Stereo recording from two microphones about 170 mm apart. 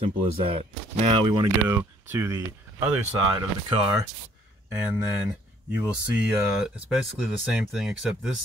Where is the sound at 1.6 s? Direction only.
15° right (ahead or behind).